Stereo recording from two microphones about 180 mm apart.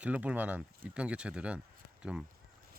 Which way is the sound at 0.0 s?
5° right (ahead or behind).